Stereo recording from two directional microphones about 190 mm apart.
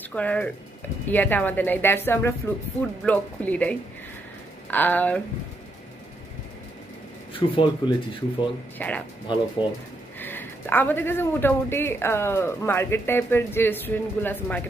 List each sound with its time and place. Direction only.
0.1 s a man's voice: 5° left (ahead or behind)
7.3 s speech: 25° left (ahead or behind)
8.7 s a man's voice: 10° left (ahead or behind)
9.6 s speech: 25° left (ahead or behind)
10.1 s a man's voice: 10° left (ahead or behind)